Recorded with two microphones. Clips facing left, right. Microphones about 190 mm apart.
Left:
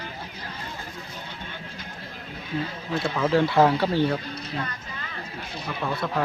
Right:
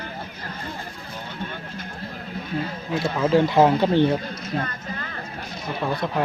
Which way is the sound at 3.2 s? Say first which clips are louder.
Right 3 dB; 15° right (ahead or behind).